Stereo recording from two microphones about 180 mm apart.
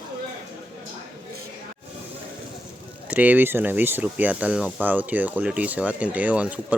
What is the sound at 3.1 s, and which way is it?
Speech, 10° right (ahead or behind).